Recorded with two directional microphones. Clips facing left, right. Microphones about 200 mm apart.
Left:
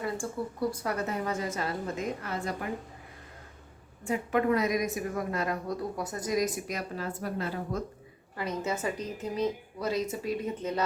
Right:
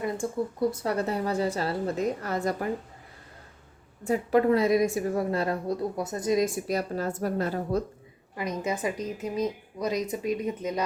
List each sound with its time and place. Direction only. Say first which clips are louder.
0.0 s speech: right 4 dB; 20° right (ahead or behind); by 2.6 s 40° right (ahead or behind)
4.0 s speech: right 5 dB; 35° right (ahead or behind)
8.4 s a woman's voice: right 2 dB; 15° right (ahead or behind)